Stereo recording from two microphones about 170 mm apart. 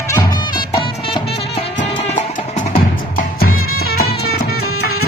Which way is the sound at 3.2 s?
60° left (ahead or behind).